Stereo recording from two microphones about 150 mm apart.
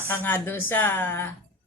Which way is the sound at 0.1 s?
15° left (ahead or behind).